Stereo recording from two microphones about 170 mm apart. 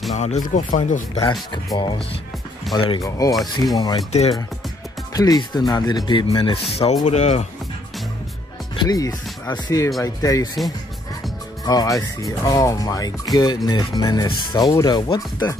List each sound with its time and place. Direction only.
0.1 s speech: 45° left (ahead or behind)
1.1 s speech: 25° left (ahead or behind)
2.7 s speech: 30° left (ahead or behind)
5.1 s speech: 20° left (ahead or behind); by 7.4 s 40° left (ahead or behind)
8.7 s speech: 20° left (ahead or behind)
11.6 s speech: 25° left (ahead or behind)